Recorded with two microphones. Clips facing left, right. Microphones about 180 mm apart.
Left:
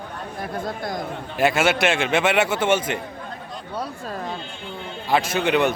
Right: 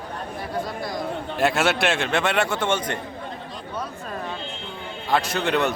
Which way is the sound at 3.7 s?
35° left (ahead or behind).